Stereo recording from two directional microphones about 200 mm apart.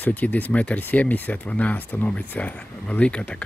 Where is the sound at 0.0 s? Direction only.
10° left (ahead or behind).